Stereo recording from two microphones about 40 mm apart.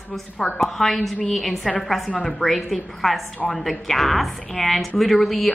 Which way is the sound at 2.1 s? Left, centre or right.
Left.